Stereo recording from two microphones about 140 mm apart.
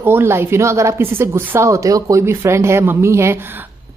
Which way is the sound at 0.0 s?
15° right (ahead or behind).